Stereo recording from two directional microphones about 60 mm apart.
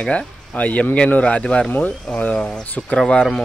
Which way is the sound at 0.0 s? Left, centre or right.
Left.